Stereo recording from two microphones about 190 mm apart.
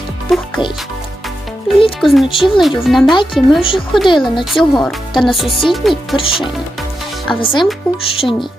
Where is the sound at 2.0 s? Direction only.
Centre (ahead or behind).